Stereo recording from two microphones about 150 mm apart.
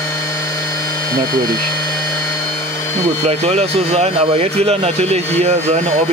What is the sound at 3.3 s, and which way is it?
Speech, 45° right (ahead or behind).